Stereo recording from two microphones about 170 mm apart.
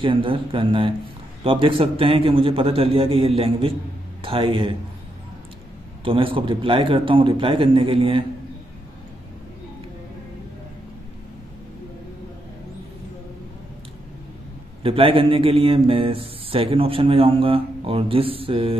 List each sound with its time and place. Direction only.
0.0 s a man's voice: 30° right (ahead or behind)
6.0 s a man's voice: 30° right (ahead or behind)
14.8 s a man's voice: 30° right (ahead or behind)